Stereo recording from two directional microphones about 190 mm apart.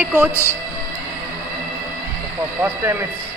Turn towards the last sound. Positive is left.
turn(degrees=-15)  # may be behind; listen again after turning